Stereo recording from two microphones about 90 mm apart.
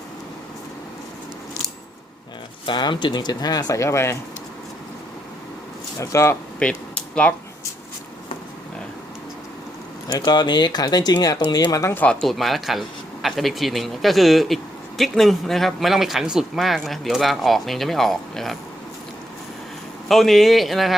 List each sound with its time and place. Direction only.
2.6 s speech: 60° left (ahead or behind); by 4.2 s 30° left (ahead or behind)
6.0 s speech: 35° left (ahead or behind)
6.6 s speech: 10° left (ahead or behind)
10.2 s speech: 55° left (ahead or behind); by 11.9 s 40° left (ahead or behind)
12.2 s speech: centre (ahead or behind)
20.1 s speech: centre (ahead or behind)